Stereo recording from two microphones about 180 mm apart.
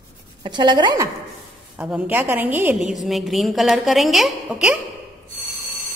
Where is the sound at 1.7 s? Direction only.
5° right (ahead or behind).